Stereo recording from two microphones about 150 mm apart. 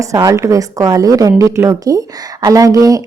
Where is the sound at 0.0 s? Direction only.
20° right (ahead or behind).